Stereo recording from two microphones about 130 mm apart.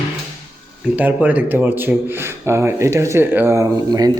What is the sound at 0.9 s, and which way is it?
Speech, 10° right (ahead or behind).